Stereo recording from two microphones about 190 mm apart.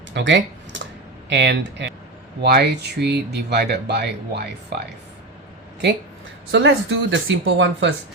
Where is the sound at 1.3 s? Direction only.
65° right (ahead or behind).